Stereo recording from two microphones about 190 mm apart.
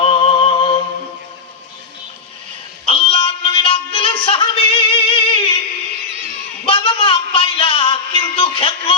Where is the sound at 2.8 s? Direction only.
30° left (ahead or behind).